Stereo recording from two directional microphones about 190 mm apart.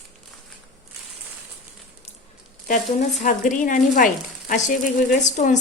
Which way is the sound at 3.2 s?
40° left (ahead or behind).